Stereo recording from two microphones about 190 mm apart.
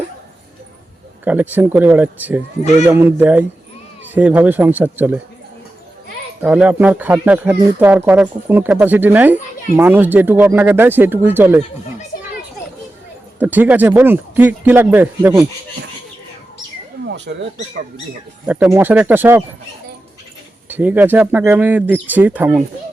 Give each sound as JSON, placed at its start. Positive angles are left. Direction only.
{"t": 1.2, "sound": "speech", "side_deg": -10}
{"t": 6.4, "sound": "speech", "side_deg": -10}
{"t": 13.4, "sound": "speech", "side_deg": -10}
{"t": 17.1, "sound": "speech", "side_deg": -65}
{"t": 18.7, "sound": "speech", "side_deg": -10}
{"t": 20.7, "sound": "speech", "side_deg": -10}